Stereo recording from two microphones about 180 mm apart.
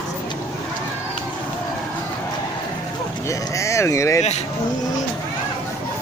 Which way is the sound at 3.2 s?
15° left (ahead or behind).